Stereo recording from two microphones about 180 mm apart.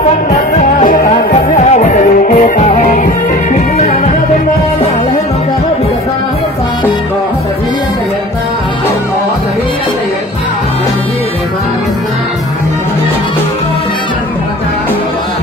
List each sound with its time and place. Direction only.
0.3 s music: 45° left (ahead or behind)